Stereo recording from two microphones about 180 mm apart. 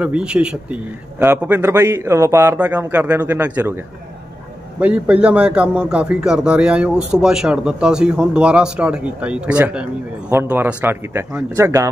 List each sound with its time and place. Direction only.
0.0 s a man's voice: 5° right (ahead or behind)